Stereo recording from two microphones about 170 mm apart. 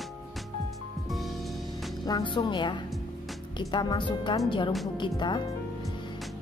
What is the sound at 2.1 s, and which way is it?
Music, 25° left (ahead or behind).